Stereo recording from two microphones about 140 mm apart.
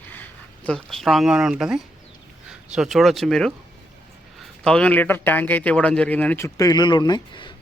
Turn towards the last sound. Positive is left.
turn(degrees=35)  # may be behind; listen again after turning